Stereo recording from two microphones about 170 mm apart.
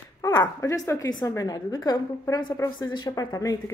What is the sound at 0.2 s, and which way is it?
A woman's voice, 15° left (ahead or behind).